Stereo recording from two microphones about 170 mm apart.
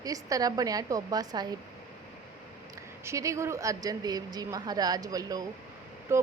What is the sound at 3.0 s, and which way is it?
A woman's voice, 20° right (ahead or behind).